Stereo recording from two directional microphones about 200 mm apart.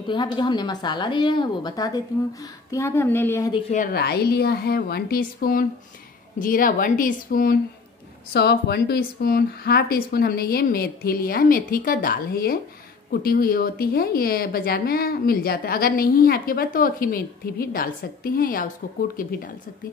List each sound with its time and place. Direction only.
0.0 s a woman's voice: 25° left (ahead or behind)
3.7 s a woman's voice: 45° left (ahead or behind)